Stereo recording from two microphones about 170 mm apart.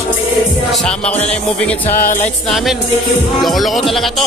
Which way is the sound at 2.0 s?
55° left (ahead or behind).